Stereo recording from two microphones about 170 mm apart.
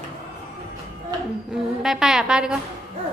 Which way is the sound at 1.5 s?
Centre (ahead or behind).